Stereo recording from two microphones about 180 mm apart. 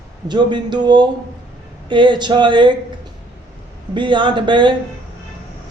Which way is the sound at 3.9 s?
25° right (ahead or behind).